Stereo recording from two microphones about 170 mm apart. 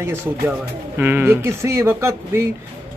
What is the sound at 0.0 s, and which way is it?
A man's voice, 15° right (ahead or behind).